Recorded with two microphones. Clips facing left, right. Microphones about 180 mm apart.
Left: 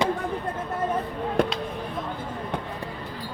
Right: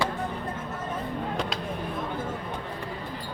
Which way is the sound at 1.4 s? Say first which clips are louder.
Left 11 dB; 55° left (ahead or behind).